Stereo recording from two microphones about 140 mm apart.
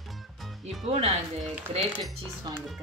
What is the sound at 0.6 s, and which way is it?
Speech, 50° right (ahead or behind).